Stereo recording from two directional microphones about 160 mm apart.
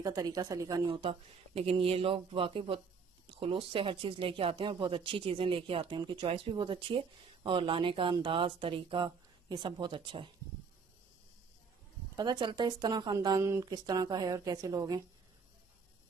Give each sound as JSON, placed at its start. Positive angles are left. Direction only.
{"t": 0.0, "sound": "speech", "side_deg": -25}
{"t": 12.2, "sound": "a woman's voice", "side_deg": -30}